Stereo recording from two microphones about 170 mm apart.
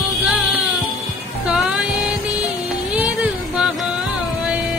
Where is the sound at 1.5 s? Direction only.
5° right (ahead or behind).